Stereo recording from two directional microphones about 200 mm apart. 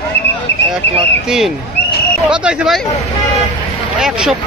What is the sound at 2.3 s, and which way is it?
Speech, 5° right (ahead or behind).